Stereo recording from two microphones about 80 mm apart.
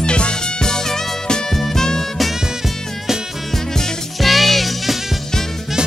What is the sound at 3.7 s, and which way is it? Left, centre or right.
Music, centre.